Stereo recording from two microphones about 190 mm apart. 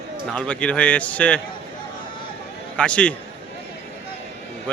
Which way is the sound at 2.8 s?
5° left (ahead or behind).